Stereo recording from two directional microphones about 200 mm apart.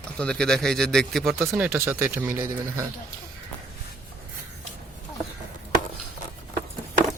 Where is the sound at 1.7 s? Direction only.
10° right (ahead or behind).